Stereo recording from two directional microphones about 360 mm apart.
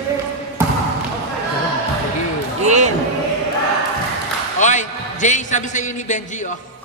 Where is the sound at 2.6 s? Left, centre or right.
Centre.